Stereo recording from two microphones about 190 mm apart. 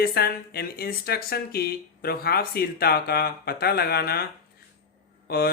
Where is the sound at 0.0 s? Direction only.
55° left (ahead or behind).